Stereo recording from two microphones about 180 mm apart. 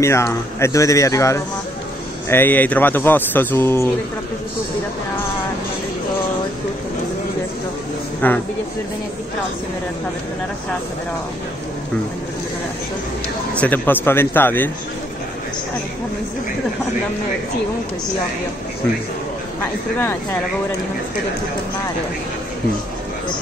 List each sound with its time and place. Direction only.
0.0 s speech: 15° left (ahead or behind)
8.2 s speech: 10° left (ahead or behind)
13.6 s speech: 10° left (ahead or behind)
20.0 s speech: 15° left (ahead or behind)